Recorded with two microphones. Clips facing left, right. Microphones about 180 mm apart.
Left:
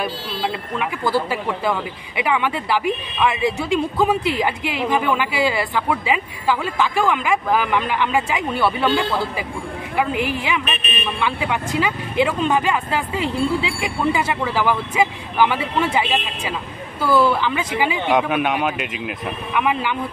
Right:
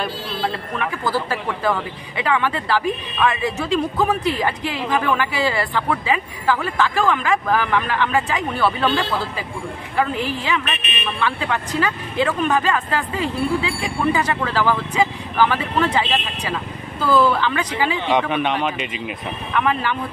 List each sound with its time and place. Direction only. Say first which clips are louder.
0.0 s a man's voice: even; 10° left (ahead or behind)